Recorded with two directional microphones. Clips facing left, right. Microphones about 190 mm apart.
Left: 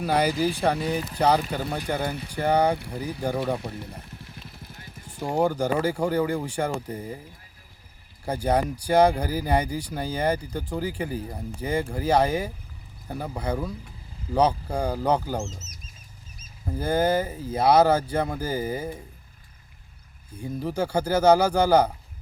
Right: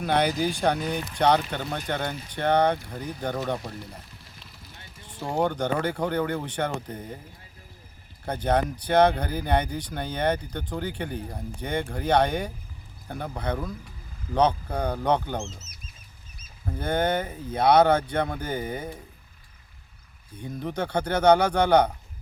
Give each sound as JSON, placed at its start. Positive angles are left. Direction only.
{"t": 0.0, "sound": "speech", "side_deg": 5}
{"t": 3.6, "sound": "speech", "side_deg": 55}
{"t": 4.0, "sound": "a sound", "side_deg": 55}
{"t": 5.4, "sound": "speech", "side_deg": 10}
{"t": 8.2, "sound": "speech", "side_deg": 10}
{"t": 15.4, "sound": "speech", "side_deg": 45}
{"t": 16.6, "sound": "speech", "side_deg": 5}
{"t": 20.3, "sound": "speech", "side_deg": 5}